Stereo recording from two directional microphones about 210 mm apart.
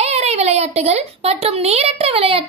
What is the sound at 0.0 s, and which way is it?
Speech, 30° right (ahead or behind).